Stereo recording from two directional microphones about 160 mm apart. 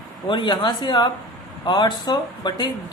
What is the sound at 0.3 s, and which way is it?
Speech, 30° left (ahead or behind).